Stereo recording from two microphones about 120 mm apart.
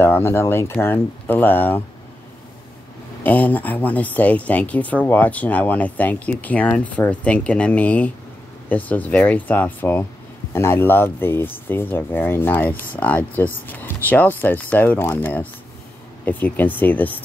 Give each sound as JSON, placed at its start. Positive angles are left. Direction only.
{"t": 0.0, "sound": "speech", "side_deg": 20}
{"t": 3.3, "sound": "speech", "side_deg": 15}